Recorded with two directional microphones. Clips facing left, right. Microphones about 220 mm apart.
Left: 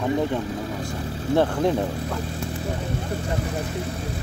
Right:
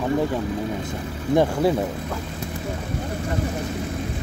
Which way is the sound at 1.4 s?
10° right (ahead or behind).